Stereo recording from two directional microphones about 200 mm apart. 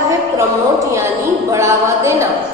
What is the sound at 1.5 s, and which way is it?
Speech, 15° right (ahead or behind).